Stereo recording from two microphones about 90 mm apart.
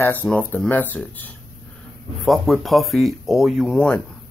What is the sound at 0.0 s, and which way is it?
Speech, 20° left (ahead or behind).